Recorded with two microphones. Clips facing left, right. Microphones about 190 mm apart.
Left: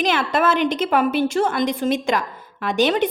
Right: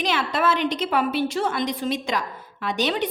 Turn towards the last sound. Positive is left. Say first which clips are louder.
# left 6 dB
turn(degrees=50)  # may be behind; listen again after turning